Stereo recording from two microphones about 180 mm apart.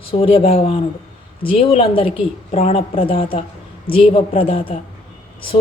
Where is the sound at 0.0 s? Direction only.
30° left (ahead or behind).